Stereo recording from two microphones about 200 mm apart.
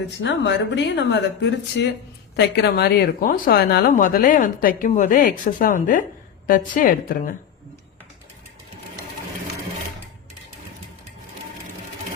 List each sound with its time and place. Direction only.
0.2 s speech: 60° left (ahead or behind); by 7.3 s 45° left (ahead or behind)